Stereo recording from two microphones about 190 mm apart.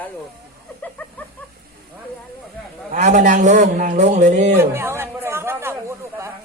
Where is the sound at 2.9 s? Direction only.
40° right (ahead or behind).